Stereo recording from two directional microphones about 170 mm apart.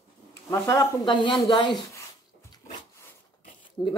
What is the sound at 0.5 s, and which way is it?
Speech, 20° left (ahead or behind).